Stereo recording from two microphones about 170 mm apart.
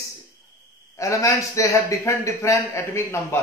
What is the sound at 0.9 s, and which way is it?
A man's voice, 20° left (ahead or behind).